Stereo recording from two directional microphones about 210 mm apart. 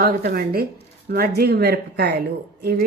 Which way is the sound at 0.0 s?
45° right (ahead or behind).